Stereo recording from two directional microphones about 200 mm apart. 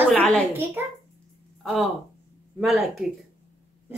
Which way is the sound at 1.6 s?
Centre (ahead or behind).